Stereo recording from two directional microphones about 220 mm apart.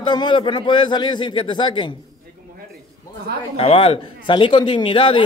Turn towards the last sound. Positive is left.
turn(degrees=20)  # may be behind; listen again after turning